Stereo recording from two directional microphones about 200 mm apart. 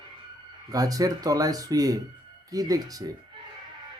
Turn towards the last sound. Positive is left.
turn(degrees=-20)  # may be behind; listen again after turning